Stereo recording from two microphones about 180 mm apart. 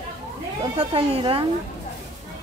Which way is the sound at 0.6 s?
30° right (ahead or behind).